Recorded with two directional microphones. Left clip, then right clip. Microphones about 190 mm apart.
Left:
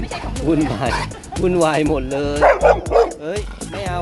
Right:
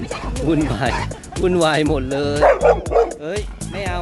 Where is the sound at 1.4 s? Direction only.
15° right (ahead or behind).